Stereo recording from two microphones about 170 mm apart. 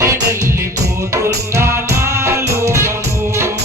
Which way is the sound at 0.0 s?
20° right (ahead or behind).